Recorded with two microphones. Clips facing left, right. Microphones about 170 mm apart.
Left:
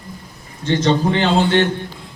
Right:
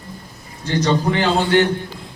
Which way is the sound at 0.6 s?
25° left (ahead or behind).